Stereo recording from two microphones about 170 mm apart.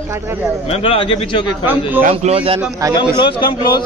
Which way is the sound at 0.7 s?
35° left (ahead or behind).